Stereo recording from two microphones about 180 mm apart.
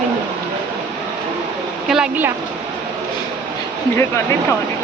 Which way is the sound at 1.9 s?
5° right (ahead or behind).